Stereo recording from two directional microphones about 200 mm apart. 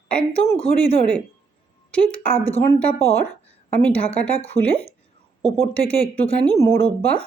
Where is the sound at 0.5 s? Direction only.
30° left (ahead or behind).